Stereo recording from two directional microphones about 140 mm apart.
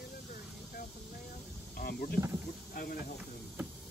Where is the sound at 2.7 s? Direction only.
90° left.